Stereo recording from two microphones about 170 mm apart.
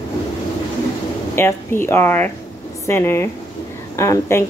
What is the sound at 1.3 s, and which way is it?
Speech, 15° left (ahead or behind).